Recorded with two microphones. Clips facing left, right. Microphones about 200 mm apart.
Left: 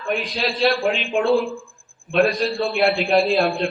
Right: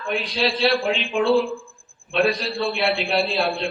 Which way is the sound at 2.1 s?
45° left (ahead or behind).